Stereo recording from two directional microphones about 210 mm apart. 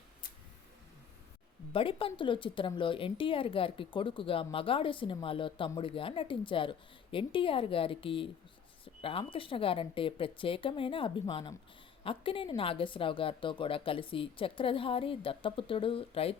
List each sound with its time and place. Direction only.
1.7 s speech: 25° left (ahead or behind)